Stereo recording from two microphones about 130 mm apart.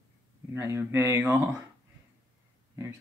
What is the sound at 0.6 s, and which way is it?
Speech, 20° right (ahead or behind).